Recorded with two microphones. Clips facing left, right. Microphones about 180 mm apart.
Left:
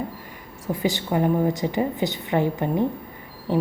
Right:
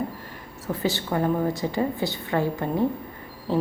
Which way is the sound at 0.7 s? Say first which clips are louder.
Left 2 dB; 15° left (ahead or behind).